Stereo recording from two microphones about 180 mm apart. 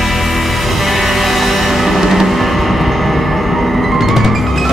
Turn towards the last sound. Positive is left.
turn(degrees=0)  # may be behind; listen again after turning